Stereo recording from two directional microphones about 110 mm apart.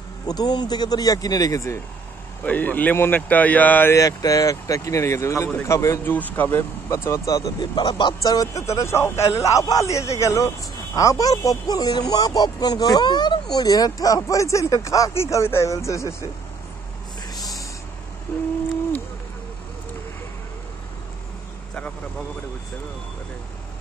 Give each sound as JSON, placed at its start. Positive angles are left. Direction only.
{"t": 0.3, "sound": "speech", "side_deg": 40}
{"t": 2.4, "sound": "speech", "side_deg": 15}
{"t": 3.9, "sound": "speech", "side_deg": 30}
{"t": 6.1, "sound": "speech", "side_deg": 15}